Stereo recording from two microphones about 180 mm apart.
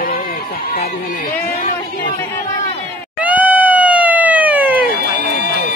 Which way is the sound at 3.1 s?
10° right (ahead or behind).